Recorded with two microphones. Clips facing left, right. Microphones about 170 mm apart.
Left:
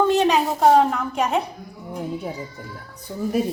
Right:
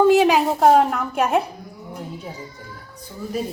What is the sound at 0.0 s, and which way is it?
A woman's voice, 5° right (ahead or behind).